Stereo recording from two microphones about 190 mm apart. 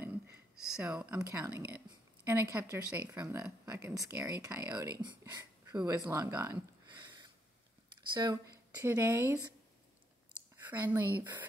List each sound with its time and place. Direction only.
0.8 s speech: 10° right (ahead or behind)
8.1 s speech: 20° right (ahead or behind)
10.6 s speech: 10° right (ahead or behind)